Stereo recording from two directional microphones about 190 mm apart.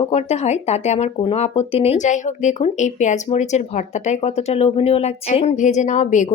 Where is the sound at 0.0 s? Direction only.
35° left (ahead or behind).